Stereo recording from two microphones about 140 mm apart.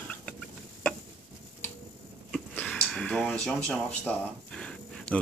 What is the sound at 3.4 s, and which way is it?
Speech, 10° left (ahead or behind).